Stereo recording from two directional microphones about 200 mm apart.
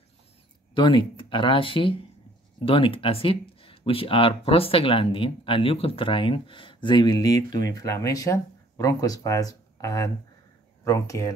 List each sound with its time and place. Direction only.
0.7 s speech: 25° left (ahead or behind)